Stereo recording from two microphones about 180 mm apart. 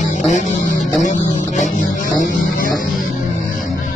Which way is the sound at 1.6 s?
50° left (ahead or behind).